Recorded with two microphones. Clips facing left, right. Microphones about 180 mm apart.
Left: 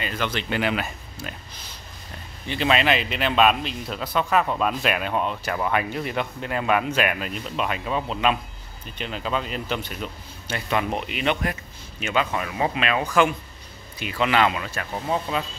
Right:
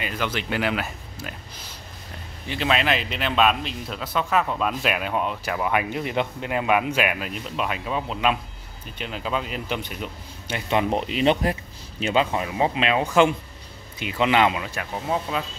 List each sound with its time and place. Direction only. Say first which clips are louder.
0.0 s speech: even; 10° right (ahead or behind)
2.4 s a man's voice: left 2 dB; centre (ahead or behind)
15.0 s a man's voice: even; 5° right (ahead or behind)